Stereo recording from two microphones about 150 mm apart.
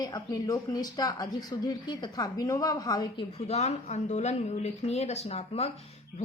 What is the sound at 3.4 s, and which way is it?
Speech, 45° left (ahead or behind).